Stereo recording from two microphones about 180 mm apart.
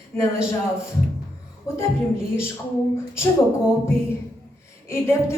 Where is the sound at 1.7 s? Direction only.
15° left (ahead or behind).